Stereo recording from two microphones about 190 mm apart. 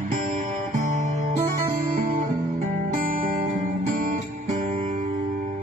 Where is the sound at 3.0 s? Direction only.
50° right (ahead or behind).